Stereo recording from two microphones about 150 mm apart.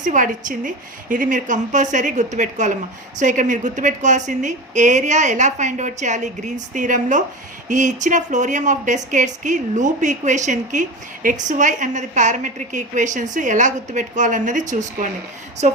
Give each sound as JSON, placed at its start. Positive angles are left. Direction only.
{"t": 0.0, "sound": "speech", "side_deg": -60}